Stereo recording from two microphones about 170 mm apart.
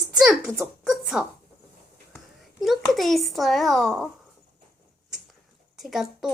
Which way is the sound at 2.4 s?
Centre (ahead or behind).